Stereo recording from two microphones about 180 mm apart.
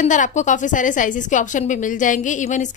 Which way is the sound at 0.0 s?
40° left (ahead or behind).